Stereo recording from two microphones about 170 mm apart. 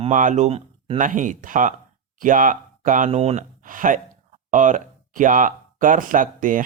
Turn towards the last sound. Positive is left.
turn(degrees=-50)  # may be behind; listen again after turning